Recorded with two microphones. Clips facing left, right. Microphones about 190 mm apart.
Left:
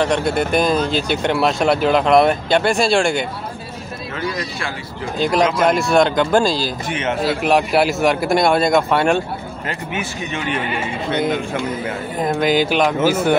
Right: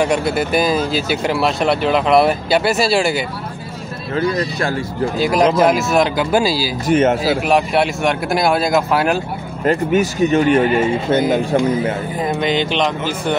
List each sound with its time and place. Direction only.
0.0 s speech: 5° right (ahead or behind)
4.1 s speech: 40° right (ahead or behind)
5.1 s speech: 5° right (ahead or behind)
6.9 s speech: 45° right (ahead or behind)
7.2 s speech: centre (ahead or behind)
9.7 s speech: 45° right (ahead or behind)
12.2 s speech: centre (ahead or behind)